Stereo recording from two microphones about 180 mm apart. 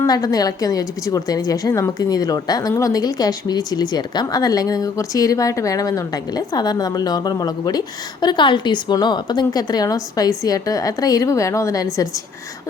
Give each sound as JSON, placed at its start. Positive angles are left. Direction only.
{"t": 0.0, "sound": "a woman's voice", "side_deg": 20}